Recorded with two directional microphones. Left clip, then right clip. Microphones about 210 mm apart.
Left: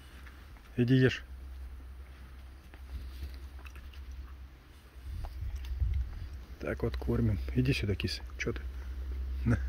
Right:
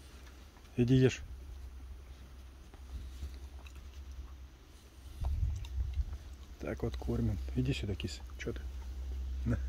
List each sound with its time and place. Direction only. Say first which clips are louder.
0.7 s speech: left 2 dB; centre (ahead or behind)
6.6 s speech: left 4 dB; 5° left (ahead or behind)
7.2 s speech: left 4 dB; 20° left (ahead or behind)